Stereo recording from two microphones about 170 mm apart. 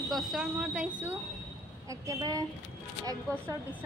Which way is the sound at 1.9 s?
20° right (ahead or behind).